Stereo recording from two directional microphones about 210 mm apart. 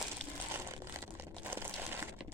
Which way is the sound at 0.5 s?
10° right (ahead or behind).